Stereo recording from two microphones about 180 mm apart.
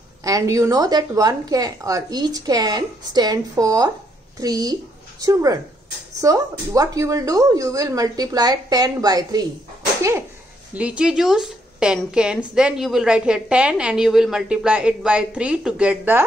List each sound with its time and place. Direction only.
0.2 s a woman's voice: 20° right (ahead or behind)
10.7 s a woman's voice: 5° right (ahead or behind)